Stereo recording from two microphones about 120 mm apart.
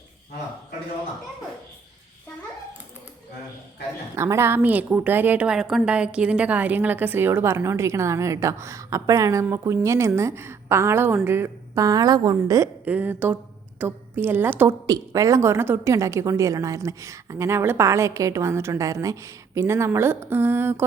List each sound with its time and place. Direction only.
4.1 s a woman's voice: 25° right (ahead or behind)
12.8 s a woman's voice: 15° right (ahead or behind)
14.8 s a woman's voice: 25° right (ahead or behind)